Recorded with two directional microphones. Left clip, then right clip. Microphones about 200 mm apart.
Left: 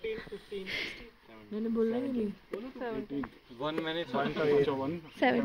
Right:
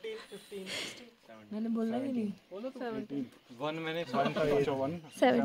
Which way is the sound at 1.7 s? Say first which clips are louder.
Left 5 dB; 55° right (ahead or behind).